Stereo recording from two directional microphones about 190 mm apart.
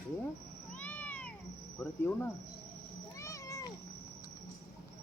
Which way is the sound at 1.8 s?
10° left (ahead or behind).